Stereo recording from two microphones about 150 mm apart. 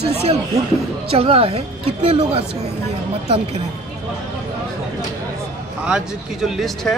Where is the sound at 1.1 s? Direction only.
40° right (ahead or behind).